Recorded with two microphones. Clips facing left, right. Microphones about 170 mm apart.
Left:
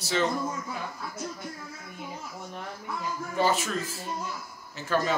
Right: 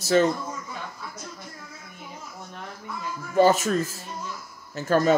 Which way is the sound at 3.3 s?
45° right (ahead or behind).